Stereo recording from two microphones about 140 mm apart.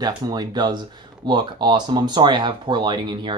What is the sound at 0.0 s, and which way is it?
Speech, 30° right (ahead or behind).